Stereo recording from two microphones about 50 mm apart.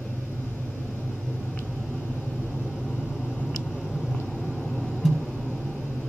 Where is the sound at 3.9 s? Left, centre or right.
Centre.